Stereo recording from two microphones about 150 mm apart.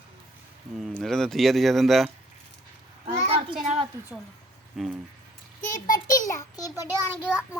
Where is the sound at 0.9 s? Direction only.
5° left (ahead or behind).